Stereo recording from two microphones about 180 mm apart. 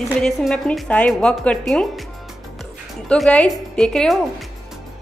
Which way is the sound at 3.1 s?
5° left (ahead or behind).